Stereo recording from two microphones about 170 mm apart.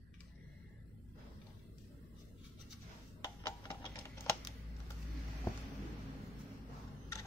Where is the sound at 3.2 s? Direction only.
20° left (ahead or behind).